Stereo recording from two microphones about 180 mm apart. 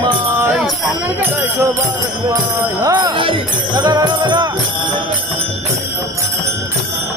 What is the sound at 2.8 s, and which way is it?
Jingle bell, 20° right (ahead or behind).